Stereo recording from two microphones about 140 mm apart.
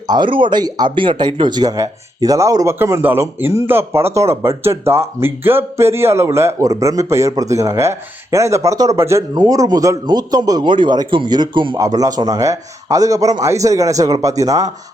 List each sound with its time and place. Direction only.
0.1 s speech: 35° right (ahead or behind)